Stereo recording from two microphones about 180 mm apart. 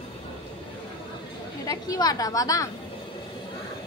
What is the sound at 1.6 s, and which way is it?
A woman's voice, 20° left (ahead or behind).